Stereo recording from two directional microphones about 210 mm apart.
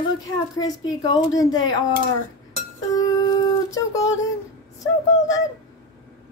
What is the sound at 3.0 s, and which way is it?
Music, 15° left (ahead or behind).